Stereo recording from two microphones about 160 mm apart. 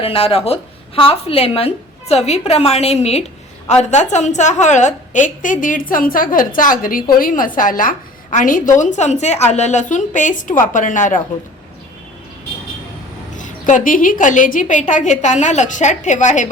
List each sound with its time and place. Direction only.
0.0 s a woman's voice: 35° left (ahead or behind); by 11.2 s 55° left (ahead or behind)
13.3 s a woman's voice: 50° left (ahead or behind)